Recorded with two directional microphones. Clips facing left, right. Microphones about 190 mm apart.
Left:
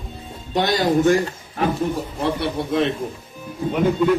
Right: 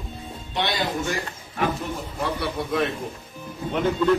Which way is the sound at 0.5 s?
45° left (ahead or behind).